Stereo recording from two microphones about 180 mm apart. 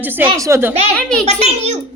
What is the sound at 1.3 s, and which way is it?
Speech, 40° right (ahead or behind).